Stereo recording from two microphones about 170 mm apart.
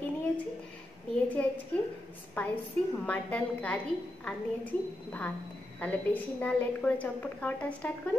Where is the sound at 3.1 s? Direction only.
10° left (ahead or behind).